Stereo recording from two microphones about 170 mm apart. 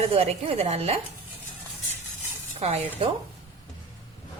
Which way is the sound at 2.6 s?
40° right (ahead or behind).